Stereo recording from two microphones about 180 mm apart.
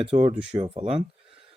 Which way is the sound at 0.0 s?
35° right (ahead or behind).